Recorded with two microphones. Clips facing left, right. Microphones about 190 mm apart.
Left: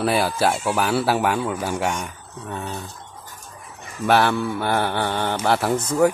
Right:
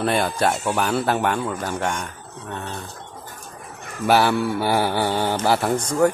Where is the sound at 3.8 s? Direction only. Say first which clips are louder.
Even; 55° right (ahead or behind).